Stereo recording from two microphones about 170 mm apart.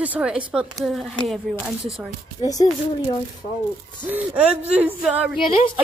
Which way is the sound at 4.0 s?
10° right (ahead or behind).